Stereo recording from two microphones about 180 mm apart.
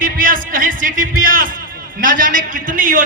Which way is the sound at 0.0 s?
50° right (ahead or behind).